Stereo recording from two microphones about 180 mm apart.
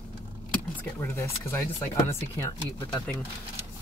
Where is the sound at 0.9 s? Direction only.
15° left (ahead or behind).